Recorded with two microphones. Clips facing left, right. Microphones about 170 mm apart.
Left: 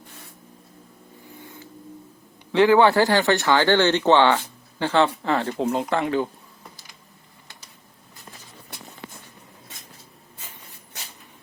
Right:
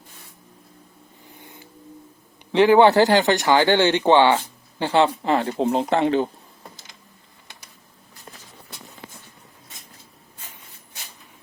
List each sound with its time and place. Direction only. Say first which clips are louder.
2.5 s speech: right 2 dB; 20° right (ahead or behind)